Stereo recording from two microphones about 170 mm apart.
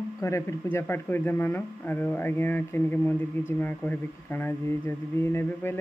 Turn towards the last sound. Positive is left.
turn(degrees=15)  # may be behind; listen again after turning